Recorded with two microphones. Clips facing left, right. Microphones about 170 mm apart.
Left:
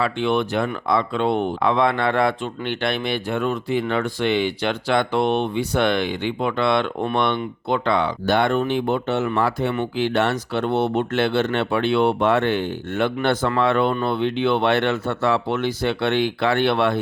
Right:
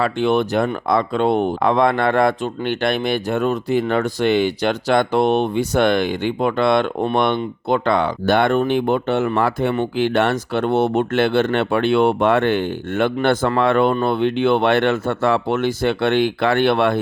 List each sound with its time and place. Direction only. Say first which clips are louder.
0.0 s speech: right 3 dB; 40° right (ahead or behind)